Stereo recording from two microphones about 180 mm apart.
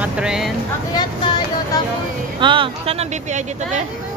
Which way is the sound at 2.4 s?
30° right (ahead or behind).